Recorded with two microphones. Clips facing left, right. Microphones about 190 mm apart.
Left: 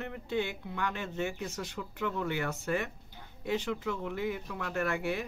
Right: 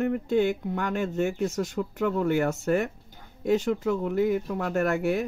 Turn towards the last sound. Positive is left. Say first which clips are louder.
# right 7 dB
turn(degrees=-45)  # may be behind; listen again after turning